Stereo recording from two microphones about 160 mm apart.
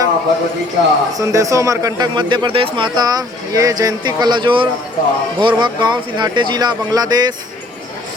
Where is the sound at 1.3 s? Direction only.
20° right (ahead or behind).